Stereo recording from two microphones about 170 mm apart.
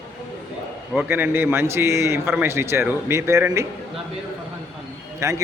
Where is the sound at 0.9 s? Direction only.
10° right (ahead or behind).